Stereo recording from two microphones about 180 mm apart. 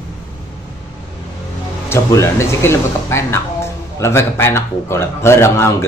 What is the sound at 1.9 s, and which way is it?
A man's voice, 15° left (ahead or behind).